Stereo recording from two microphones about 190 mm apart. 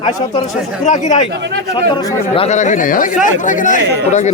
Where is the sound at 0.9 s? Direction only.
40° left (ahead or behind).